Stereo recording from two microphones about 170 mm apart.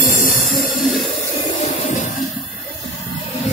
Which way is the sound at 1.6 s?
40° left (ahead or behind).